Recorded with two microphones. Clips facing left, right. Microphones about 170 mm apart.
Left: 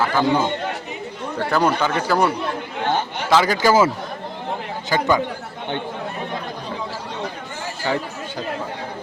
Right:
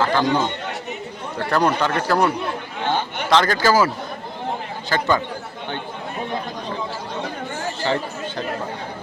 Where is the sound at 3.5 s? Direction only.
20° left (ahead or behind).